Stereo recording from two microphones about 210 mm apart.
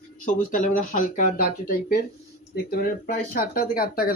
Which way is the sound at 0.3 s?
35° left (ahead or behind).